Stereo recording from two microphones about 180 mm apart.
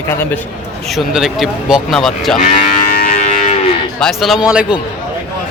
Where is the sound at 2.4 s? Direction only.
50° left (ahead or behind).